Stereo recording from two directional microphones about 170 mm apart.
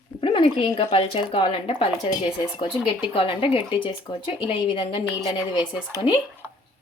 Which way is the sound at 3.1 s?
30° left (ahead or behind).